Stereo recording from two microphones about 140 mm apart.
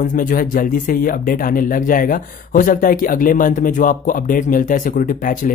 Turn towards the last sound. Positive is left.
turn(degrees=75)  # may be behind; listen again after turning